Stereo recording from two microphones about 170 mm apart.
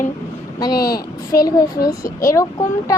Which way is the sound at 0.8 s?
65° left (ahead or behind).